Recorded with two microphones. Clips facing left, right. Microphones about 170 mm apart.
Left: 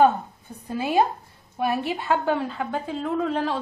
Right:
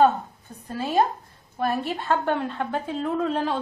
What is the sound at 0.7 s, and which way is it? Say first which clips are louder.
A woman's voice: left 1 dB; 10° left (ahead or behind).